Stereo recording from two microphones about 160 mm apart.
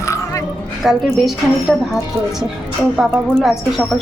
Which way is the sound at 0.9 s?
Centre (ahead or behind).